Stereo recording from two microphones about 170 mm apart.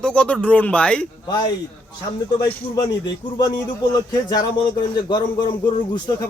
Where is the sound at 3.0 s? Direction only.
25° left (ahead or behind).